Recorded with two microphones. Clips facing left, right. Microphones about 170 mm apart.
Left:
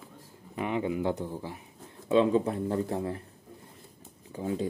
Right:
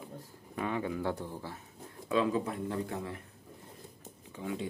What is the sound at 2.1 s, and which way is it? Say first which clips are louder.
Speech: left 6 dB; 25° left (ahead or behind).